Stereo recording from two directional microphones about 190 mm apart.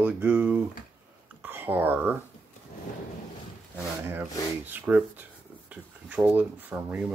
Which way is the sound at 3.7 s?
10° right (ahead or behind).